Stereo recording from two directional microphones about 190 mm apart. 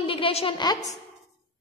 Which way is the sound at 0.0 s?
30° left (ahead or behind).